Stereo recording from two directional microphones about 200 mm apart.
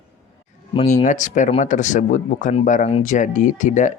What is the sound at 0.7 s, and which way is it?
Speech, 30° left (ahead or behind).